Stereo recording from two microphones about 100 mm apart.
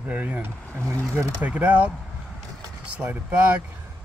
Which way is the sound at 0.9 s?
30° right (ahead or behind).